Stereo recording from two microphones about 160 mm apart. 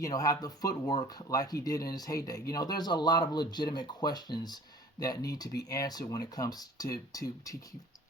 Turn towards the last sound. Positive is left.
turn(degrees=20)  # may be behind; listen again after turning